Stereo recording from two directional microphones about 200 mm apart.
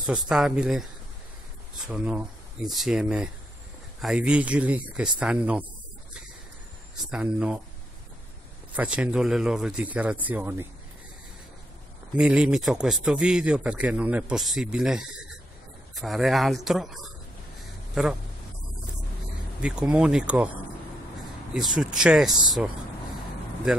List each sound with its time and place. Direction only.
0.0 s a man's voice: 5° right (ahead or behind)
1.9 s a man's voice: 5° right (ahead or behind)
7.0 s a man's voice: 5° right (ahead or behind)
8.7 s a man's voice: 5° right (ahead or behind)
12.2 s a man's voice: 5° right (ahead or behind)
19.6 s a man's voice: 5° right (ahead or behind)
21.5 s a man's voice: centre (ahead or behind)